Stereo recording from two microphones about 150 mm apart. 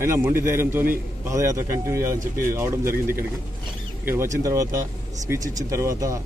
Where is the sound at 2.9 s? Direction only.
75° right (ahead or behind).